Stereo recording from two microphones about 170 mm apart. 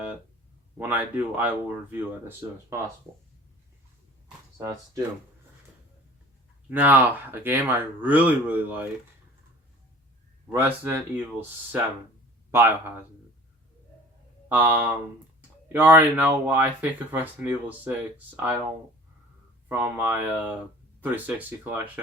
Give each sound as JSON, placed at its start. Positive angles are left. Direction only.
{"t": 0.8, "sound": "speech", "side_deg": -10}
{"t": 4.5, "sound": "speech", "side_deg": -15}
{"t": 6.7, "sound": "speech", "side_deg": -10}
{"t": 10.5, "sound": "speech", "side_deg": -15}
{"t": 14.5, "sound": "speech", "side_deg": -10}
{"t": 19.6, "sound": "speech", "side_deg": -10}